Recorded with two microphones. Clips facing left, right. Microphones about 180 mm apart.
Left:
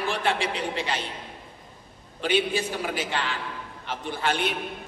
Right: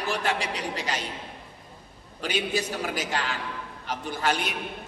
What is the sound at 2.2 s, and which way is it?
A man's voice, 40° right (ahead or behind).